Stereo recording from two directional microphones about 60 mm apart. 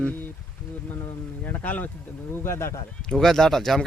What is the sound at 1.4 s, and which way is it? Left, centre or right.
Speech, left.